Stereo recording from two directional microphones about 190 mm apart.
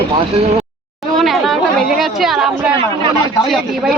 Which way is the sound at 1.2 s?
Centre (ahead or behind).